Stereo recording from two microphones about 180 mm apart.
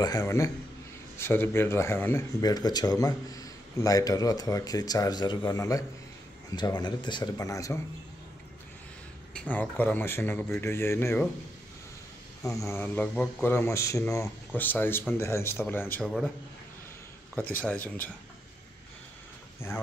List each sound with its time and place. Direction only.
0.0 s speech: 20° left (ahead or behind)
9.3 s speech: 5° left (ahead or behind)
12.4 s speech: 15° left (ahead or behind)
17.4 s speech: 10° left (ahead or behind)